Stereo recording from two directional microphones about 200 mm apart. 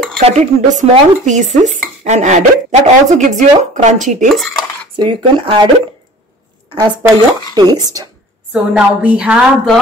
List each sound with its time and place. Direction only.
0.2 s dishes: 35° right (ahead or behind)
4.9 s speech: 25° right (ahead or behind)
6.7 s speech: 20° right (ahead or behind)
8.7 s speech: 5° right (ahead or behind)